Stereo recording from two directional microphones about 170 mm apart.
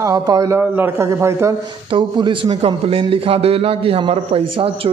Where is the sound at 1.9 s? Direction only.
30° right (ahead or behind).